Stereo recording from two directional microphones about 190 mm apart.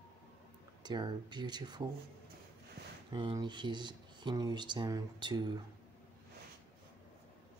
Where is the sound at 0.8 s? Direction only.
20° right (ahead or behind).